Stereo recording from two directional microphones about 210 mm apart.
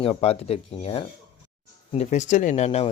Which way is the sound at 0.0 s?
30° left (ahead or behind).